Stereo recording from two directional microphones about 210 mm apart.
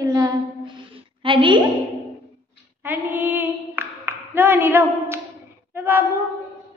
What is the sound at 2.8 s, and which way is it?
Singing, 10° right (ahead or behind).